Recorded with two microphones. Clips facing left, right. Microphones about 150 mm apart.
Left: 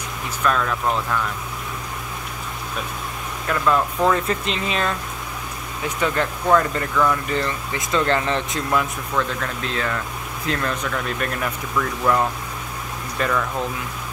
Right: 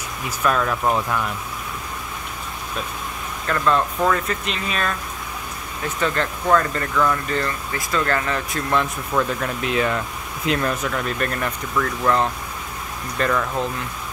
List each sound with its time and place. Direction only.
0.4 s speech: 5° right (ahead or behind)
3.4 s speech: 10° left (ahead or behind)
4.3 s speech: 25° left (ahead or behind)
5.9 s speech: 15° left (ahead or behind)
7.2 s speech: 20° left (ahead or behind)
9.1 s speech: 15° right (ahead or behind); by 12.3 s 10° left (ahead or behind)
13.2 s speech: 5° right (ahead or behind)